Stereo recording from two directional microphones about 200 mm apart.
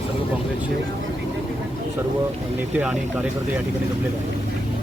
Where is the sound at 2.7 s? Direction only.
5° right (ahead or behind).